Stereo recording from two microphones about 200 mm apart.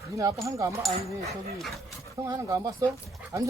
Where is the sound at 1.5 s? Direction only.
Centre (ahead or behind).